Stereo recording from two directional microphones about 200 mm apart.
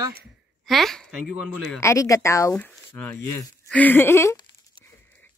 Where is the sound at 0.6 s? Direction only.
Centre (ahead or behind).